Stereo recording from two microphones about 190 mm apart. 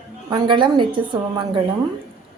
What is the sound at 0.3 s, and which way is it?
A woman's voice, 25° right (ahead or behind).